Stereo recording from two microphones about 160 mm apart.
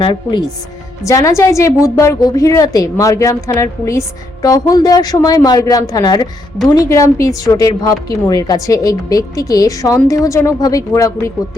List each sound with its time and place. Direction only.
0.0 s a woman's voice: 30° left (ahead or behind)